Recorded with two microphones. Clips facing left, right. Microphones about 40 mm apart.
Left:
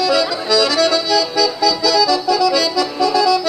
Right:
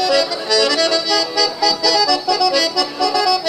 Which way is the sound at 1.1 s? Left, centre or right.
Right.